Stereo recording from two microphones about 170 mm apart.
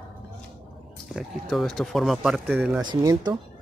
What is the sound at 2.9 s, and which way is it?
Speech, 25° right (ahead or behind).